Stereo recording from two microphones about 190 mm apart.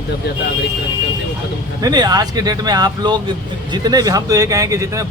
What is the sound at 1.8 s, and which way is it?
Speech, 20° right (ahead or behind).